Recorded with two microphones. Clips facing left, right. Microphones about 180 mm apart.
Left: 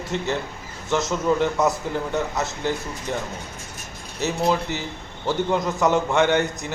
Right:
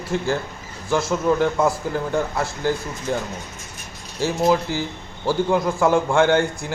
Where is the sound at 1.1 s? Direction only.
5° right (ahead or behind).